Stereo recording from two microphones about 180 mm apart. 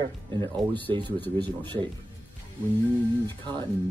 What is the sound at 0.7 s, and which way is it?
Speech, 10° left (ahead or behind).